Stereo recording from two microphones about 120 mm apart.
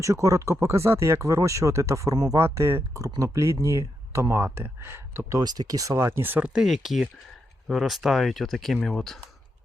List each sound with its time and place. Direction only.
0.0 s speech: 25° right (ahead or behind)
5.4 s speech: 35° right (ahead or behind); by 9.2 s centre (ahead or behind)